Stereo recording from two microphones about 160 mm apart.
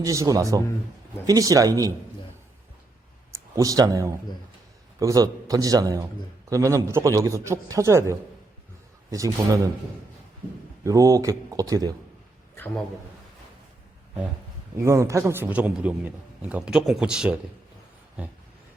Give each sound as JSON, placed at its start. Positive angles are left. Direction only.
{"t": 0.0, "sound": "a man's voice", "side_deg": -20}
{"t": 3.3, "sound": "a man's voice", "side_deg": -20}
{"t": 10.8, "sound": "a man's voice", "side_deg": -20}
{"t": 12.5, "sound": "a sound", "side_deg": 10}
{"t": 14.8, "sound": "a man's voice", "side_deg": -20}